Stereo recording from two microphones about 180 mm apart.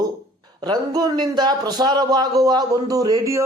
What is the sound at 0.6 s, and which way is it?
A man's voice, 20° right (ahead or behind).